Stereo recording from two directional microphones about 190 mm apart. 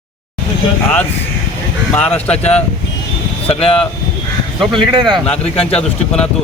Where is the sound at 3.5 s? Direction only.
30° left (ahead or behind).